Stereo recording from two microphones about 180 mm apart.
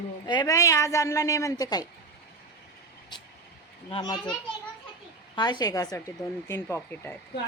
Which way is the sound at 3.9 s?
25° left (ahead or behind).